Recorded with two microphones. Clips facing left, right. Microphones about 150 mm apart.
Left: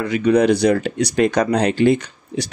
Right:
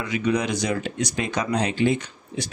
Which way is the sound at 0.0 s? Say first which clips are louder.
Left 8 dB; 60° left (ahead or behind).